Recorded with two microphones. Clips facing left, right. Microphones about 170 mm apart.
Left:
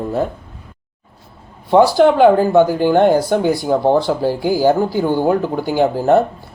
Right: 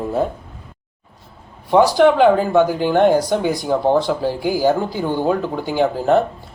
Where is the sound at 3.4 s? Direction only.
20° right (ahead or behind).